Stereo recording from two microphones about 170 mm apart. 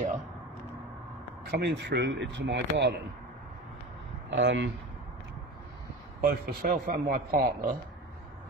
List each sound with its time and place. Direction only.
1.5 s speech: 90° right
4.3 s speech: 90° right
6.2 s a man's voice: 60° right (ahead or behind)